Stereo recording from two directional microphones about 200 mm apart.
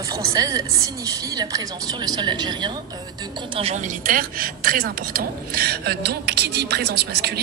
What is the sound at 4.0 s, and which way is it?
Speech, 45° right (ahead or behind).